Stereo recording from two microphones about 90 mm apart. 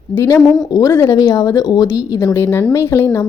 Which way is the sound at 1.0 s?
50° left (ahead or behind).